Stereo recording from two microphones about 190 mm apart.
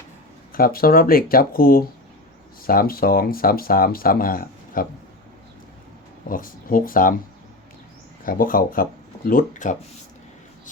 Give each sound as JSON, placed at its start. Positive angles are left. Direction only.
{"t": 0.5, "sound": "speech", "side_deg": 50}
{"t": 6.2, "sound": "speech", "side_deg": 45}
{"t": 8.2, "sound": "speech", "side_deg": 45}